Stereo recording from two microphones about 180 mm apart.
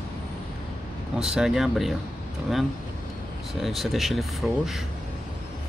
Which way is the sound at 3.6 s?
Centre (ahead or behind).